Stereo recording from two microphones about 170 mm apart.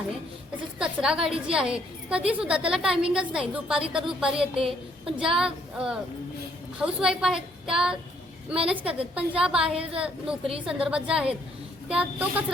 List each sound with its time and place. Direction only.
0.8 s a woman's voice: 5° right (ahead or behind)
4.4 s a woman's voice: 35° right (ahead or behind)
5.1 s a woman's voice: 5° right (ahead or behind)